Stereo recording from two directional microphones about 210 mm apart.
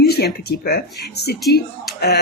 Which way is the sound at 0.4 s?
45° left (ahead or behind).